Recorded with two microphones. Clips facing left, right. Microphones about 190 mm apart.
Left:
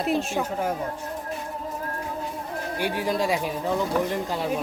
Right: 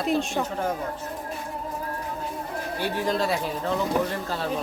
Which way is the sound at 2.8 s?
10° left (ahead or behind).